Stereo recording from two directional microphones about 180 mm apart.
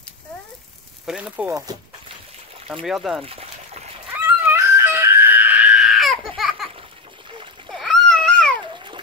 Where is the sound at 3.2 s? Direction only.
35° right (ahead or behind).